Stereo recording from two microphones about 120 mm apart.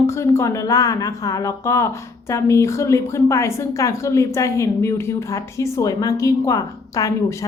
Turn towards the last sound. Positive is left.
turn(degrees=30)  # may be behind; listen again after turning